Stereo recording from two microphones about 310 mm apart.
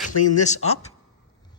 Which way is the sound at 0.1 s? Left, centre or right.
Left.